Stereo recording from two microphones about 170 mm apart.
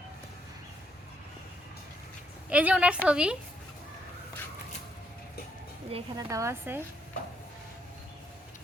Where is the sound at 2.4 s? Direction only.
5° right (ahead or behind).